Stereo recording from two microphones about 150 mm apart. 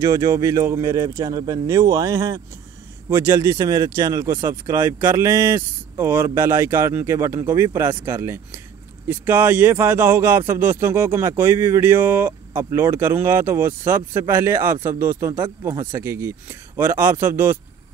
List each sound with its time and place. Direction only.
0.0 s a man's voice: 20° right (ahead or behind)